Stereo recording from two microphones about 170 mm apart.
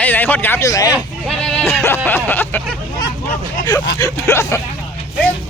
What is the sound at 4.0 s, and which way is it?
Speech, 20° left (ahead or behind).